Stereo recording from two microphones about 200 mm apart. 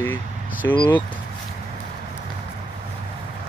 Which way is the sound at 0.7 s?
25° left (ahead or behind).